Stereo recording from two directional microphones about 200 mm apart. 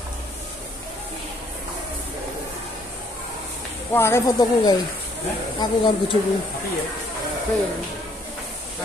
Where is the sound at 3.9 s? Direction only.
10° left (ahead or behind).